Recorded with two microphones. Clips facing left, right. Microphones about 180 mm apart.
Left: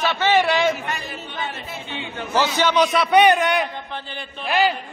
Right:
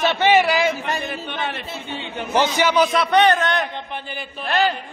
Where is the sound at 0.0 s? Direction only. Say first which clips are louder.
Right 3 dB; 20° right (ahead or behind).